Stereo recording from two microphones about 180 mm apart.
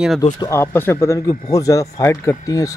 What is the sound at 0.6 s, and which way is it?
Speech, 15° left (ahead or behind).